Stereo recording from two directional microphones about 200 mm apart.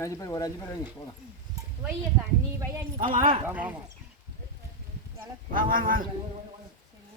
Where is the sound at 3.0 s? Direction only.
45° right (ahead or behind).